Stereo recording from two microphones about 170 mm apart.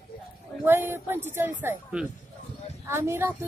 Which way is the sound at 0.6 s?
15° right (ahead or behind).